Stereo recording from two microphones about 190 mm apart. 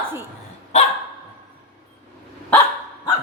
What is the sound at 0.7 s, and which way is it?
Dog, 35° left (ahead or behind).